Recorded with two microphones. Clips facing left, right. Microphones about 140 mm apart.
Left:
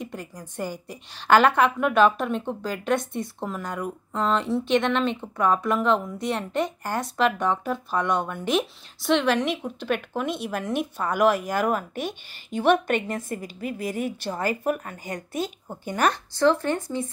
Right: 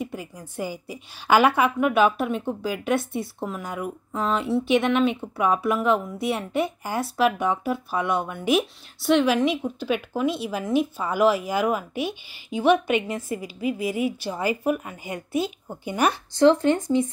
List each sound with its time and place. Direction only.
0.0 s a woman's voice: 5° right (ahead or behind)
16.3 s speech: 20° right (ahead or behind)